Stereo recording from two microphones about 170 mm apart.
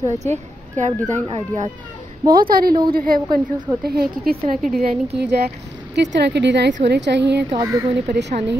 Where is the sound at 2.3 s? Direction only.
60° right (ahead or behind).